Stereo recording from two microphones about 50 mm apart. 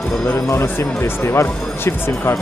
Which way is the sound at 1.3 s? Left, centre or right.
Left.